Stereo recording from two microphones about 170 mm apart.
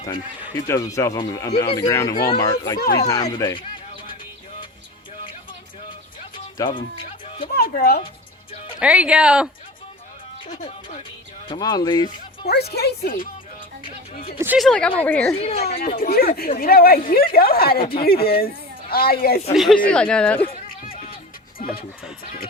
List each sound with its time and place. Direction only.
0.7 s speech: 20° left (ahead or behind)
6.3 s music: 30° left (ahead or behind)
7.4 s a woman's voice: 60° left (ahead or behind)
8.5 s music: 30° left (ahead or behind)
8.8 s speech: 5° right (ahead or behind)
10.5 s speech: 40° left (ahead or behind)
11.4 s speech: 25° left (ahead or behind)
12.5 s speech: 70° left (ahead or behind)
14.3 s speech: 10° right (ahead or behind)
14.6 s speech: 5° left (ahead or behind)
15.4 s speech: 35° left (ahead or behind)
15.6 s a woman's voice: 65° left (ahead or behind)
19.5 s speech: 5° left (ahead or behind)
20.5 s a sound: 60° left (ahead or behind)